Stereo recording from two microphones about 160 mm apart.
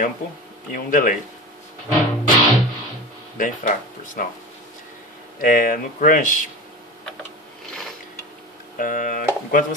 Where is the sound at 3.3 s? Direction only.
55° left (ahead or behind).